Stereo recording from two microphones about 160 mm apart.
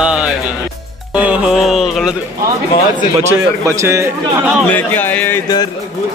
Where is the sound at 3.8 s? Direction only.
20° right (ahead or behind).